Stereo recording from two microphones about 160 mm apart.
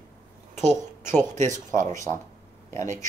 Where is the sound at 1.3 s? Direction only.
50° right (ahead or behind).